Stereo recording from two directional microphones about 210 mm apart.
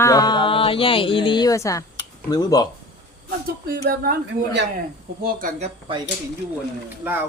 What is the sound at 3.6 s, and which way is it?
Speech, 45° right (ahead or behind).